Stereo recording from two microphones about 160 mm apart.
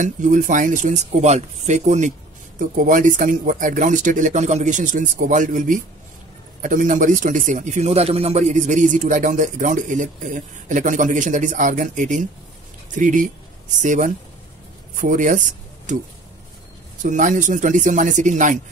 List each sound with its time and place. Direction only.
0.0 s speech: 50° right (ahead or behind)
17.0 s speech: 50° right (ahead or behind)